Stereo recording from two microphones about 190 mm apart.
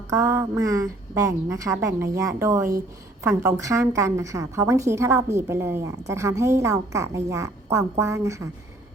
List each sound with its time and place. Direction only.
0.1 s a woman's voice: 15° right (ahead or behind)